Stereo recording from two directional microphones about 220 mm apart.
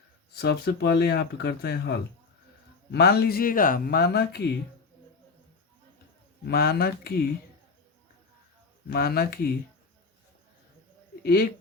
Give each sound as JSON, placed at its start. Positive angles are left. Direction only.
{"t": 0.3, "sound": "speech", "side_deg": 45}
{"t": 6.4, "sound": "speech", "side_deg": 45}
{"t": 8.9, "sound": "speech", "side_deg": 45}
{"t": 11.2, "sound": "speech", "side_deg": 45}